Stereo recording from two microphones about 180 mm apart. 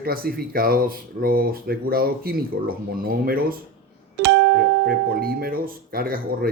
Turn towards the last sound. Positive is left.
turn(degrees=-55)  # may be behind; listen again after turning